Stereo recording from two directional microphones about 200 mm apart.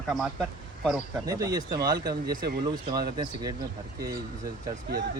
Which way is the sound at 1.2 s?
15° right (ahead or behind).